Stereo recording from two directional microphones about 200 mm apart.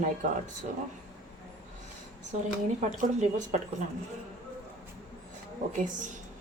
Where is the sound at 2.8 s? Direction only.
35° right (ahead or behind).